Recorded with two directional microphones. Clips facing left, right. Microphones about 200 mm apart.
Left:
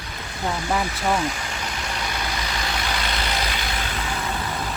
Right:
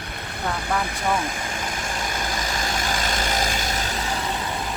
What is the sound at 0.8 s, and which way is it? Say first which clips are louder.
Vehicle: left 1 dB; 50° right (ahead or behind).